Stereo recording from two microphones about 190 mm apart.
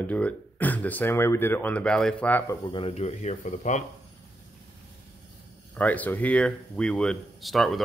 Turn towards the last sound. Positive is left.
turn(degrees=0)  # may be behind; listen again after turning